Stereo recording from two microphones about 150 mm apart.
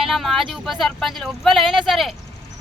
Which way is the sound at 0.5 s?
Centre (ahead or behind).